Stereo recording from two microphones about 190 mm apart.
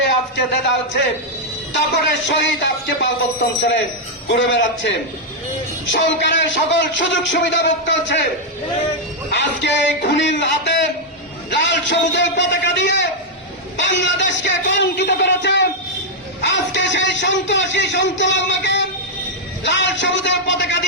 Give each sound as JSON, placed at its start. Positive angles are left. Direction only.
{"t": 0.0, "sound": "a man's voice", "side_deg": 65}
{"t": 2.2, "sound": "speech", "side_deg": 70}
{"t": 9.3, "sound": "speech", "side_deg": 65}